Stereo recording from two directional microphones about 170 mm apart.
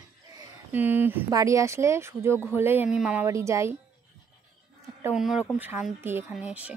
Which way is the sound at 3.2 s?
15° right (ahead or behind).